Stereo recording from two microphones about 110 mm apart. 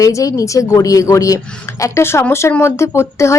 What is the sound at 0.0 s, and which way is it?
A woman's voice, 30° left (ahead or behind).